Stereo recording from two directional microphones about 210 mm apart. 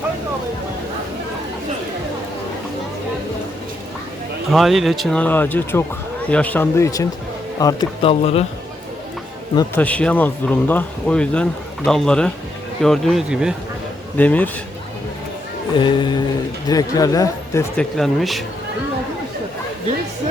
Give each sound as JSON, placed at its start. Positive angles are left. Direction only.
{"t": 4.5, "sound": "speech", "side_deg": 0}
{"t": 9.6, "sound": "speech", "side_deg": 10}
{"t": 15.7, "sound": "speech", "side_deg": 20}
{"t": 17.9, "sound": "speech", "side_deg": 0}